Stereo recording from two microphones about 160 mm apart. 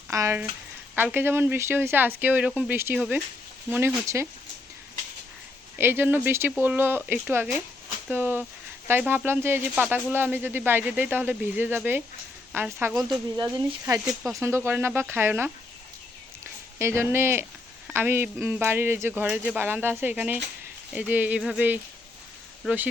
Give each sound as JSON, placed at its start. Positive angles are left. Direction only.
{"t": 0.1, "sound": "speech", "side_deg": -20}
{"t": 5.7, "sound": "speech", "side_deg": -15}
{"t": 13.1, "sound": "speech", "side_deg": -25}
{"t": 16.7, "sound": "speech", "side_deg": -15}